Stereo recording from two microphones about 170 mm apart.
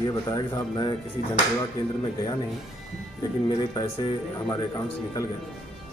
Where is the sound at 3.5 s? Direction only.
25° left (ahead or behind).